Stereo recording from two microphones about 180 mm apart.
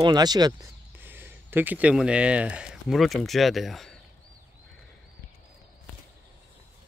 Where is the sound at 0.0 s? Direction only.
25° right (ahead or behind); by 4.0 s centre (ahead or behind).